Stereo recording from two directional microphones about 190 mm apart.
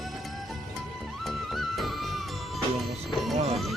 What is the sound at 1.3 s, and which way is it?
Music, centre (ahead or behind).